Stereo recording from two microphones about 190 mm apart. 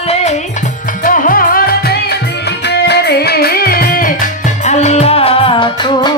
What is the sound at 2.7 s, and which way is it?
Music, 60° left (ahead or behind).